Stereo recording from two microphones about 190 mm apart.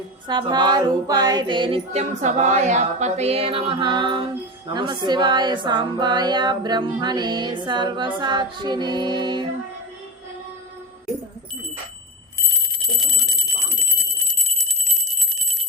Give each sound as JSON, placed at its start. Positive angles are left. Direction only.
{"t": 0.3, "sound": "music", "side_deg": -25}
{"t": 13.0, "sound": "clock", "side_deg": 0}